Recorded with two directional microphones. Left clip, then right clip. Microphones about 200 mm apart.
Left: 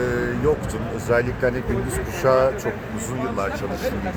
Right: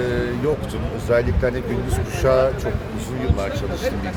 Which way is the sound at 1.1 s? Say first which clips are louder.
Right 1 dB; 10° right (ahead or behind).